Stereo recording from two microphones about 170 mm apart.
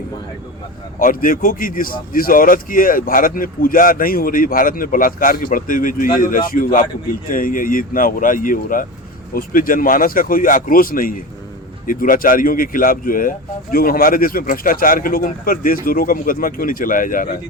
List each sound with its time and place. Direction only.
0.9 s speech: 55° left (ahead or behind)